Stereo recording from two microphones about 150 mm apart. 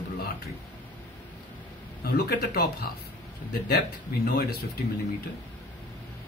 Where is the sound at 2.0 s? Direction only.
90° left.